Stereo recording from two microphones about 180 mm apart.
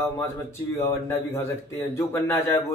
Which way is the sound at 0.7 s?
15° left (ahead or behind).